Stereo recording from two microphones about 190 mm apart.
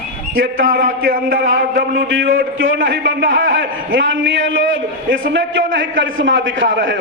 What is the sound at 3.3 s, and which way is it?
A man's voice, 85° right.